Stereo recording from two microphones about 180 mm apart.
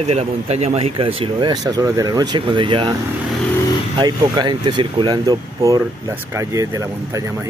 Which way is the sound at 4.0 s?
25° right (ahead or behind).